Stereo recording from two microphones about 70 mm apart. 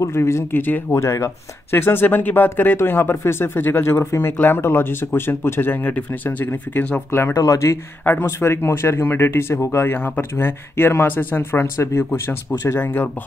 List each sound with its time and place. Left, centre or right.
0.0 s speech: left
0.6 s speech: left
0.9 s speech: left
7.1 s speech: left
8.0 s speech: left
9.9 s speech: left
10.3 s speech: left
12.7 s speech: left